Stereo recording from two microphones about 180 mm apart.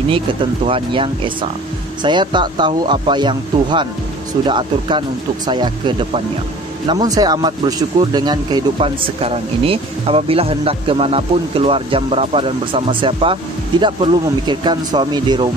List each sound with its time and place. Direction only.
0.7 s speech: 30° right (ahead or behind)